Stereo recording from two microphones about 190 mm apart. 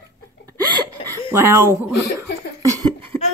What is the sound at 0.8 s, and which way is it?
Speech, 15° right (ahead or behind).